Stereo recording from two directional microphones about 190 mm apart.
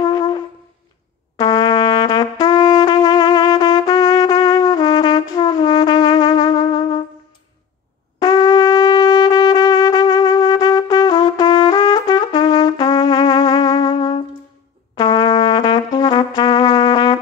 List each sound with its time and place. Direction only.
0.0 s wind instrument: 20° left (ahead or behind)
1.3 s trumpet: 20° left (ahead or behind)
8.2 s wind instrument: 20° left (ahead or behind)
15.0 s brass instrument: 25° left (ahead or behind)